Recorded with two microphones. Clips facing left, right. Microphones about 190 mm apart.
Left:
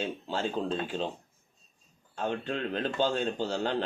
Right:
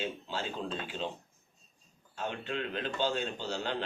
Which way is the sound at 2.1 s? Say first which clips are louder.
Left 4 dB; 45° left (ahead or behind).